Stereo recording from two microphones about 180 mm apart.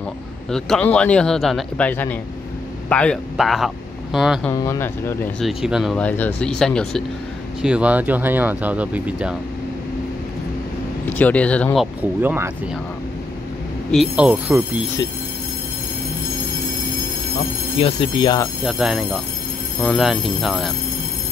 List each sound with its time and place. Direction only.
0.5 s a man's voice: 5° left (ahead or behind)
4.5 s speech: 15° left (ahead or behind)
5.4 s a man's voice: centre (ahead or behind)
7.6 s speech: 5° right (ahead or behind)
11.1 s speech: 10° left (ahead or behind); by 12.4 s 10° right (ahead or behind)
13.9 s a man's voice: 5° right (ahead or behind)
17.7 s speech: 30° left (ahead or behind)
18.6 s a man's voice: 5° right (ahead or behind)